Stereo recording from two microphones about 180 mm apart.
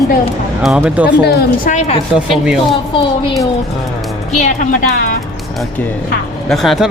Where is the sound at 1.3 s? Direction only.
45° left (ahead or behind).